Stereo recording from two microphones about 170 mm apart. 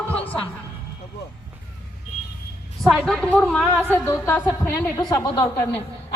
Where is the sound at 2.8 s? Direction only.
Centre (ahead or behind).